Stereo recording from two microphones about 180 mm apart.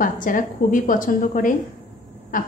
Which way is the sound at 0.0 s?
50° left (ahead or behind).